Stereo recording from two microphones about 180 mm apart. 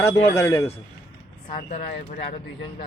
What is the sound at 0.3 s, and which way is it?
Speech, 15° left (ahead or behind).